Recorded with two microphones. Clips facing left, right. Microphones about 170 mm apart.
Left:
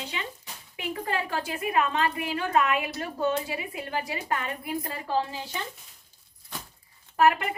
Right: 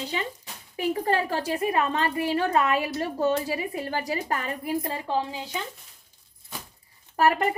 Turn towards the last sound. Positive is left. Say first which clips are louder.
# right 1 dB
turn(degrees=-35)  # may be behind; listen again after turning